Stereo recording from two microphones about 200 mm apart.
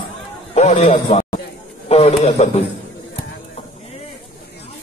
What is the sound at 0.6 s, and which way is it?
A man's voice, 35° left (ahead or behind).